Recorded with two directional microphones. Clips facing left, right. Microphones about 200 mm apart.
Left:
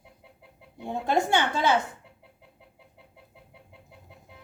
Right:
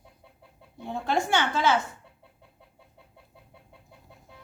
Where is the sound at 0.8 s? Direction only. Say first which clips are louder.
Left 2 dB; 20° left (ahead or behind).